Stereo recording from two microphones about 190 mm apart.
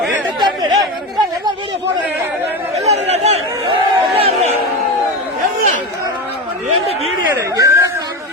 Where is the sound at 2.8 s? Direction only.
35° right (ahead or behind).